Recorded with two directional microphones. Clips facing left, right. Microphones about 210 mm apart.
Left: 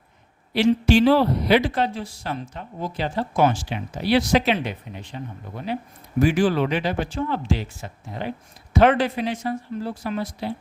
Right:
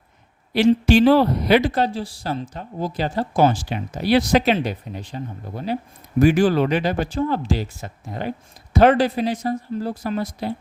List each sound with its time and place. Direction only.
0.9 s speech: 45° right (ahead or behind)